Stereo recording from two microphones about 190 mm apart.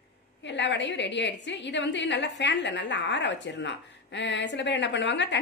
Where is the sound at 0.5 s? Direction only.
65° left (ahead or behind).